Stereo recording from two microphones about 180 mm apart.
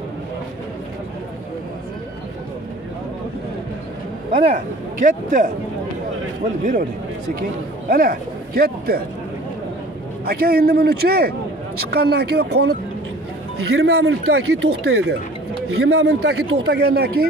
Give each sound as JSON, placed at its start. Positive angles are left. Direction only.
{"t": 4.6, "sound": "speech", "side_deg": -45}
{"t": 6.6, "sound": "a man's voice", "side_deg": -50}
{"t": 7.9, "sound": "speech", "side_deg": -55}
{"t": 10.2, "sound": "a man's voice", "side_deg": -60}
{"t": 13.7, "sound": "a man's voice", "side_deg": -70}